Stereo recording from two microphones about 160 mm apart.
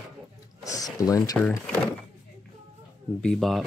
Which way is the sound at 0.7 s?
20° left (ahead or behind).